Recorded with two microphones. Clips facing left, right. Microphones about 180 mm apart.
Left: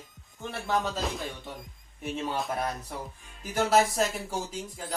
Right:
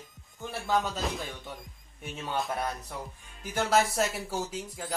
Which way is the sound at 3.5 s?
Centre (ahead or behind).